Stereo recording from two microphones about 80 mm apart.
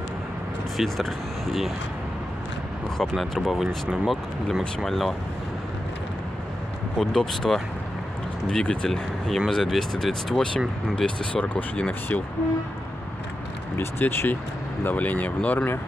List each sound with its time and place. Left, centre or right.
0.7 s speech: centre
3.0 s speech: centre
7.0 s speech: centre
13.7 s speech: left